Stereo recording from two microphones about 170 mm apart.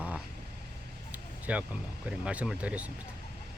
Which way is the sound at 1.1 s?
10° right (ahead or behind).